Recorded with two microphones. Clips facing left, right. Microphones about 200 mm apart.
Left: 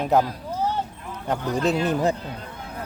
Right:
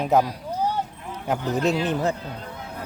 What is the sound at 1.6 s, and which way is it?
Speech, 5° left (ahead or behind).